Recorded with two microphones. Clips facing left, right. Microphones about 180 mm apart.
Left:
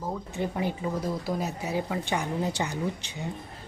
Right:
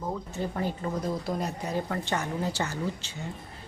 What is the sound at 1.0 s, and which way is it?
Speech, centre (ahead or behind).